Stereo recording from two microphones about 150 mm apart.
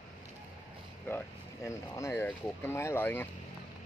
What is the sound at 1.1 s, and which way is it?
Speech, 15° left (ahead or behind).